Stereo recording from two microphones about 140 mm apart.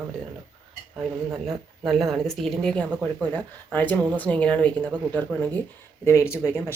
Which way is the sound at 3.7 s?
10° left (ahead or behind).